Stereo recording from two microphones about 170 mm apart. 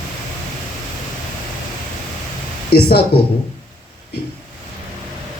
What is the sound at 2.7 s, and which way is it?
Speech, 65° left (ahead or behind).